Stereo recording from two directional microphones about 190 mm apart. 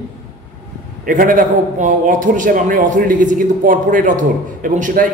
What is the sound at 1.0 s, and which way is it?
A man's voice, 45° right (ahead or behind).